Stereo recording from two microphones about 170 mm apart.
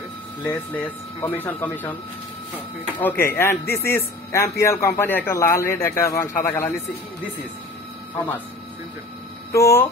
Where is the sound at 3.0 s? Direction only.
10° left (ahead or behind).